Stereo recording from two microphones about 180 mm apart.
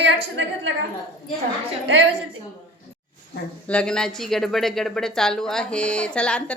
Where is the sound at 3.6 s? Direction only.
5° left (ahead or behind).